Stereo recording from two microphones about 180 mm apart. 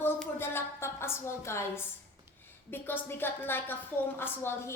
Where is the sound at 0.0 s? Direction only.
10° left (ahead or behind).